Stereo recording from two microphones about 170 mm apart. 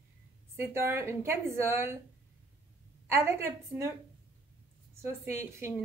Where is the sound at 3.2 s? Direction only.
15° right (ahead or behind).